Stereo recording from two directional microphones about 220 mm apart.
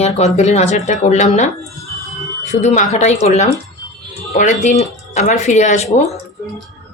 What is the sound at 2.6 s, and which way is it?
Speech, 30° left (ahead or behind).